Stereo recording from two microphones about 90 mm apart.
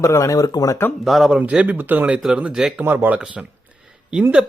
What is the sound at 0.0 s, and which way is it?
Speech, 35° left (ahead or behind).